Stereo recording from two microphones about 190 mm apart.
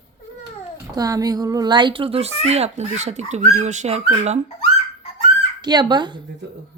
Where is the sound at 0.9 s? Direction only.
20° right (ahead or behind); by 4.4 s 35° right (ahead or behind).